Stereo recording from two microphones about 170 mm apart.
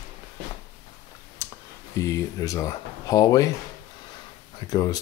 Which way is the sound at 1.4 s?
15° left (ahead or behind).